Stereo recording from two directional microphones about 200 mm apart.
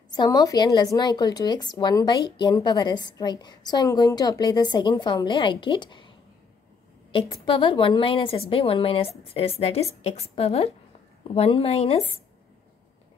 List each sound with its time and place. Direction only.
0.1 s a woman's voice: 20° left (ahead or behind)